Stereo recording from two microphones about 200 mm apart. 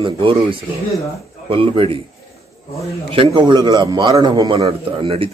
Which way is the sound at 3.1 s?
25° right (ahead or behind).